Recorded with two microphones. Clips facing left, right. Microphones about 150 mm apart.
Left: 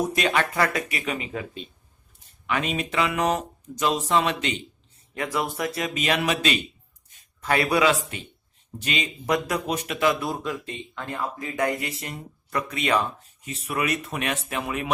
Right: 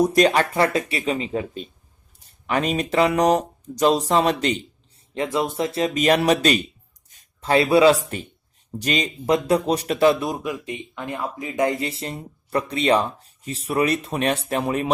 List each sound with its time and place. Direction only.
0.0 s speech: 35° right (ahead or behind)
5.1 s speech: 25° right (ahead or behind); by 6.6 s 40° right (ahead or behind)
7.4 s speech: 25° right (ahead or behind)
9.2 s speech: 25° right (ahead or behind)
10.2 s speech: 15° right (ahead or behind); by 14.8 s 35° right (ahead or behind)